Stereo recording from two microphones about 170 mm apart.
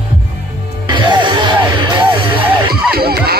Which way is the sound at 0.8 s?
30° right (ahead or behind).